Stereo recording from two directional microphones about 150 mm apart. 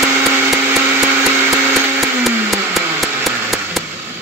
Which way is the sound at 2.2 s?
Centre (ahead or behind).